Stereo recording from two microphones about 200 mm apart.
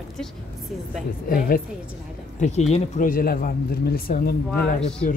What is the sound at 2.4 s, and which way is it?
Speech, 35° left (ahead or behind).